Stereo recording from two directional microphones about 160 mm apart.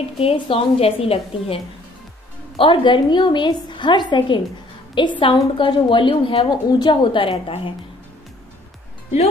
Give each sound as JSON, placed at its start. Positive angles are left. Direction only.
{"t": 0.2, "sound": "a woman's voice", "side_deg": 35}